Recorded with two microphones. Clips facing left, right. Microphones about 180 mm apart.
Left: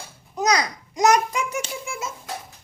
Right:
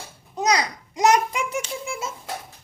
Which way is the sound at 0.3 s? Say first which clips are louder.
Even; 25° right (ahead or behind).